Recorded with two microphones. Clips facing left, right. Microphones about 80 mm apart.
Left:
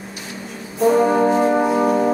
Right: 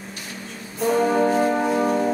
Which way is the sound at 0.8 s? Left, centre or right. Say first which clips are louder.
Left 4 dB; centre.